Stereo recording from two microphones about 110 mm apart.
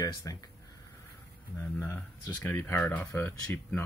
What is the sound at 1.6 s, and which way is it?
Speech, 20° left (ahead or behind).